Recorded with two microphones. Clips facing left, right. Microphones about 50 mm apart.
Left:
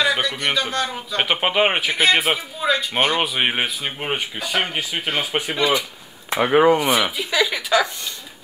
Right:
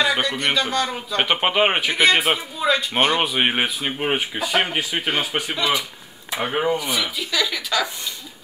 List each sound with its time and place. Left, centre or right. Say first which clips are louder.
0.0 s a sound: even; centre
0.8 s speech: right 1 dB; centre
5.6 s speech: left 3 dB; left
6.3 s speech: left 7 dB; left
6.6 s speech: left 7 dB; left
7.2 s speech: left 3 dB; centre